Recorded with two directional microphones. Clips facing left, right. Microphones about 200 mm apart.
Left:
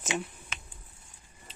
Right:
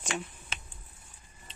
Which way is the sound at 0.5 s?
30° right (ahead or behind).